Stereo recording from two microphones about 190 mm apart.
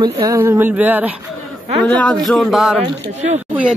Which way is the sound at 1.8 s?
5° left (ahead or behind).